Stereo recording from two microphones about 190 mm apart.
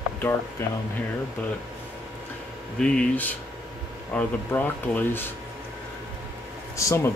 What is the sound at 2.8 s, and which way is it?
Speech, 5° left (ahead or behind).